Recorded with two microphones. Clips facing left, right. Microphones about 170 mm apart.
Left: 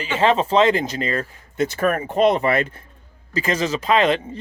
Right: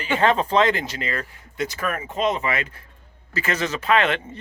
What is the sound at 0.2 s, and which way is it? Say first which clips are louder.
Speech: left 3 dB; 25° left (ahead or behind).